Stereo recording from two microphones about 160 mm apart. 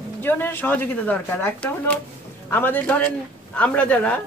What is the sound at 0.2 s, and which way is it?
Speech, 15° left (ahead or behind).